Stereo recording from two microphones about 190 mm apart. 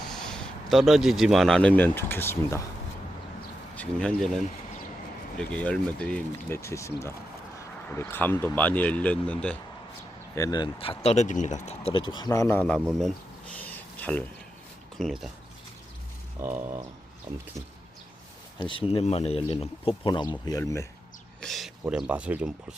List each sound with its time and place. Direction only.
0.1 s speech: 5° left (ahead or behind)
3.8 s speech: 5° left (ahead or behind)
10.3 s speech: 20° left (ahead or behind)
13.6 s a sound: 10° left (ahead or behind)
14.9 s speech: centre (ahead or behind)
16.4 s speech: 15° right (ahead or behind)
18.6 s speech: 25° left (ahead or behind)
21.4 s speech: centre (ahead or behind)